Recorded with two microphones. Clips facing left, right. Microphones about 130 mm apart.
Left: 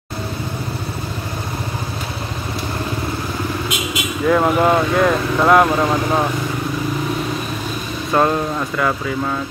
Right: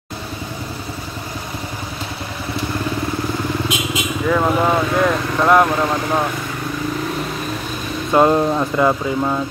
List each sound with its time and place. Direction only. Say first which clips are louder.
4.3 s speech: left 2 dB; 5° left (ahead or behind)
8.1 s speech: right 3 dB; 20° right (ahead or behind)